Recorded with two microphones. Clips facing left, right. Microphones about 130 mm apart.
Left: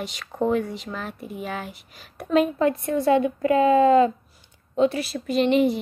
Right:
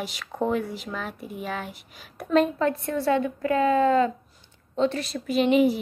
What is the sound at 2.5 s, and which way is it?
A woman's voice, 15° left (ahead or behind).